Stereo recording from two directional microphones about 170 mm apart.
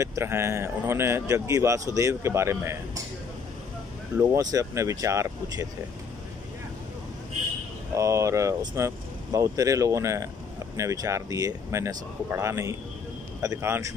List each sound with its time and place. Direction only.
0.0 s speech: 15° right (ahead or behind)
4.2 s speech: 20° right (ahead or behind)
7.9 s speech: 20° right (ahead or behind)